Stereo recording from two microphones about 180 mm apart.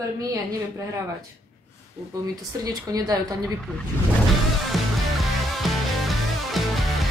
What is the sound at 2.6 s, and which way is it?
Speech, 20° right (ahead or behind).